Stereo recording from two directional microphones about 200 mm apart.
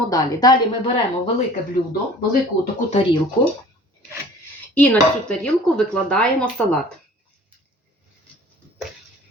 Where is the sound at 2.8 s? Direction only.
30° left (ahead or behind).